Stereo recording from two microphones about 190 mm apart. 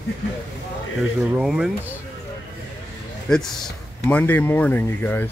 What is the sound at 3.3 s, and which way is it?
Speech, centre (ahead or behind).